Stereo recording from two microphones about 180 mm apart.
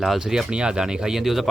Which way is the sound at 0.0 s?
Centre (ahead or behind).